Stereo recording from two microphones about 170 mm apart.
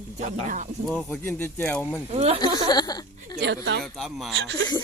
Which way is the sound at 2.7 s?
25° left (ahead or behind).